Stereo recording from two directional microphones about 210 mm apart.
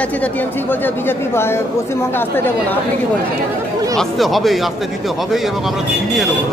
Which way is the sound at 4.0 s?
Centre (ahead or behind).